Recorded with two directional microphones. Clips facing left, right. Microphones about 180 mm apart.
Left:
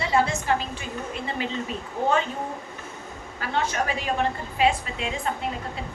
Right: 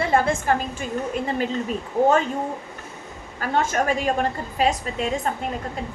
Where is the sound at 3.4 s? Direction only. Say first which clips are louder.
Right 4 dB; 45° right (ahead or behind).